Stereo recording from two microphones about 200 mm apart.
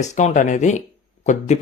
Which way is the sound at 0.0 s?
35° left (ahead or behind).